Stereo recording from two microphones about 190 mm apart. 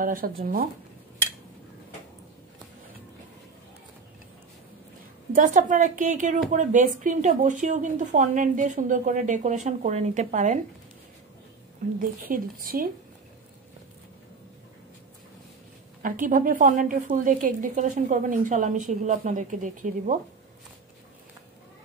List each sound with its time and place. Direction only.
0.0 s a woman's voice: 50° right (ahead or behind)
5.3 s a woman's voice: 45° right (ahead or behind)
12.3 s a woman's voice: 50° right (ahead or behind)
16.0 s a woman's voice: 45° right (ahead or behind)